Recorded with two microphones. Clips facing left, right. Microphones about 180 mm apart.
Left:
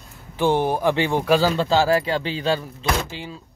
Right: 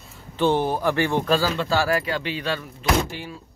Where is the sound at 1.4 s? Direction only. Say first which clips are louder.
Left 4 dB; 30° left (ahead or behind).